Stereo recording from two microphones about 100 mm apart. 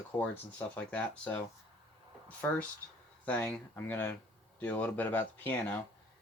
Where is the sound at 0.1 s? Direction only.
20° left (ahead or behind).